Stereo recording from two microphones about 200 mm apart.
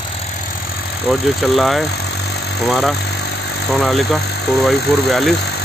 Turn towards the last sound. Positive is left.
turn(degrees=55)  # may be behind; listen again after turning